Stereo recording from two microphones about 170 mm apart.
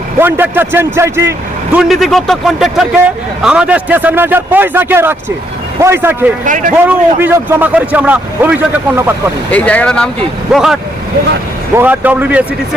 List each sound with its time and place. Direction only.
0.2 s a man's voice: 10° right (ahead or behind)
1.7 s a man's voice: centre (ahead or behind)
6.4 s speech: 50° right (ahead or behind)
6.8 s a man's voice: 10° right (ahead or behind)
9.5 s a man's voice: 10° left (ahead or behind); by 12.5 s 10° right (ahead or behind)